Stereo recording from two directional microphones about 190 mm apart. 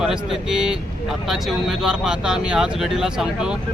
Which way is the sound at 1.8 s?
5° right (ahead or behind).